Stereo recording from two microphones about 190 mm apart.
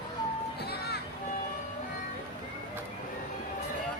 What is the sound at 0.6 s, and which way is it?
Music, 55° left (ahead or behind).